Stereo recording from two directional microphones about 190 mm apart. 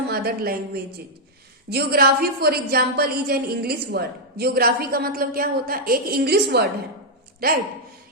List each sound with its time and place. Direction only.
0.1 s a woman's voice: 55° right (ahead or behind)